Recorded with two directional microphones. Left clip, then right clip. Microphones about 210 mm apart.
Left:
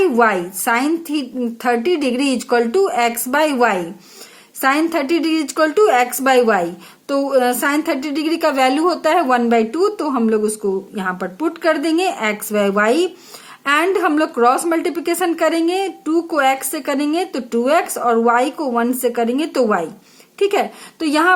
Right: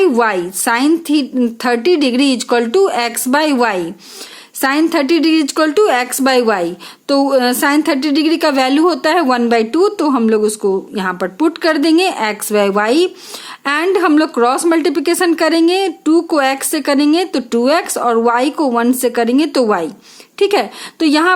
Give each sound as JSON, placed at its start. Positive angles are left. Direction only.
{"t": 0.0, "sound": "a woman's voice", "side_deg": -40}